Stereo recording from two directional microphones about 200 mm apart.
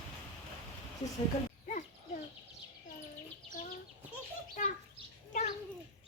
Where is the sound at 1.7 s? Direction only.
40° left (ahead or behind).